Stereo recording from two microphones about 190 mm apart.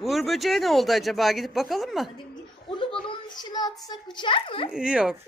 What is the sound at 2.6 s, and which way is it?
A child's voice, 25° left (ahead or behind).